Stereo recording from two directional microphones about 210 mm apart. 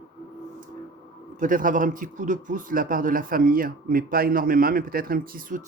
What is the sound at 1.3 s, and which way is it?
A man's voice, 40° right (ahead or behind).